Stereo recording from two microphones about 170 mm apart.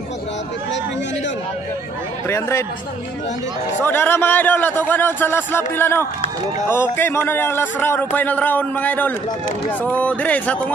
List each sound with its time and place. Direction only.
2.2 s speech: 15° left (ahead or behind)
3.8 s speech: 10° left (ahead or behind)